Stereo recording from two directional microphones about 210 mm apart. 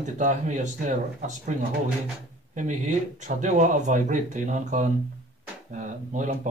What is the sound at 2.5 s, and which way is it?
Speech, 35° right (ahead or behind).